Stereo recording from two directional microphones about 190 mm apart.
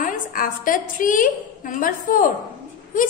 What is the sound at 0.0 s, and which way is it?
A woman's voice, 45° left (ahead or behind).